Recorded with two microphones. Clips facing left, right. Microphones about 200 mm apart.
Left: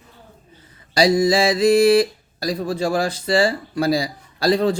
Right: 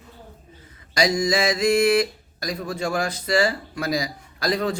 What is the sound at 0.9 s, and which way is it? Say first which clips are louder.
Speech: left 5 dB; 30° left (ahead or behind).